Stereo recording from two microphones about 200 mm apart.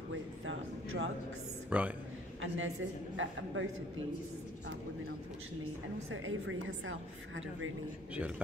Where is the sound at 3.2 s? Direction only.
75° right (ahead or behind).